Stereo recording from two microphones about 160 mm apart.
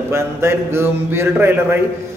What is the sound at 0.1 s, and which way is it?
A man's voice, 15° right (ahead or behind).